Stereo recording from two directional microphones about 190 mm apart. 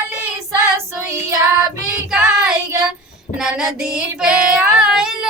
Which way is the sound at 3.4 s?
5° right (ahead or behind).